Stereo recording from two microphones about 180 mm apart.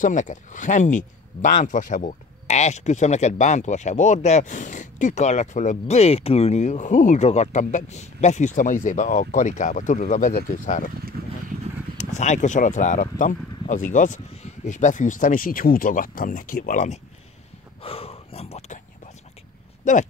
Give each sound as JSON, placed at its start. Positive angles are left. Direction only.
{"t": 0.0, "sound": "speech", "side_deg": 45}
{"t": 12.0, "sound": "speech", "side_deg": 40}
{"t": 17.8, "sound": "speech", "side_deg": 30}
{"t": 19.8, "sound": "speech", "side_deg": 40}